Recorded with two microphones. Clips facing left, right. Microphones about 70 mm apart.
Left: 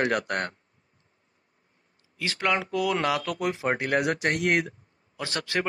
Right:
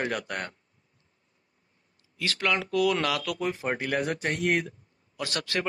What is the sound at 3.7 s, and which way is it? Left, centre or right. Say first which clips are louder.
Speech: left 4 dB; left.